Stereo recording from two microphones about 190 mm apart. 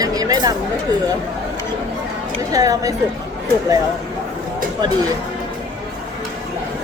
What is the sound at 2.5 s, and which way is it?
Speech, 20° right (ahead or behind).